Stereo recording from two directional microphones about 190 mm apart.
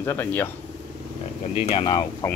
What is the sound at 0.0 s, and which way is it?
Speech, 10° left (ahead or behind).